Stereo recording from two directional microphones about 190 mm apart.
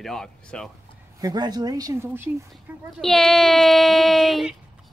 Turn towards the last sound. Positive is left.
turn(degrees=0)  # may be behind; listen again after turning